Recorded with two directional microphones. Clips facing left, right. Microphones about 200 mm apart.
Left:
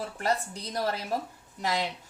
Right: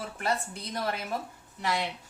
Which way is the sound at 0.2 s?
35° left (ahead or behind).